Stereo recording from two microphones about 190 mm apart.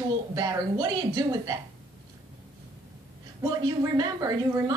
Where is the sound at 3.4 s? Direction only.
20° right (ahead or behind).